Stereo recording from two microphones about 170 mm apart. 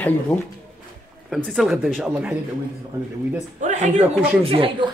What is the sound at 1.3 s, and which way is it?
Speech, centre (ahead or behind).